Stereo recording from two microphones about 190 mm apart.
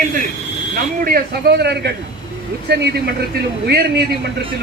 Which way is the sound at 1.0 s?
50° right (ahead or behind).